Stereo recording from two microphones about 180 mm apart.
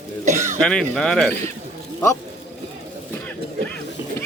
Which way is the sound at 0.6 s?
5° left (ahead or behind).